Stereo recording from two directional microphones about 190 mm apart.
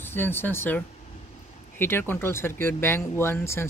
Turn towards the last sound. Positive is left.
turn(degrees=15)  # may be behind; listen again after turning